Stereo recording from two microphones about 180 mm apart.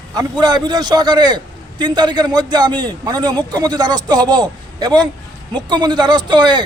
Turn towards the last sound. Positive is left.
turn(degrees=-25)  # may be behind; listen again after turning